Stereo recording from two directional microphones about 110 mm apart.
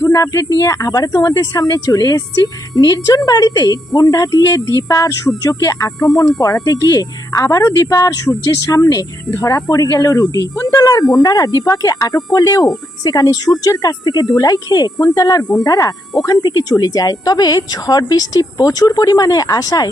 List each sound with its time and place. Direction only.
0.0 s speech: 30° left (ahead or behind)